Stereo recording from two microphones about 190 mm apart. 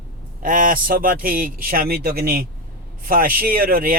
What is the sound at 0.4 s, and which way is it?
Speech, 45° right (ahead or behind).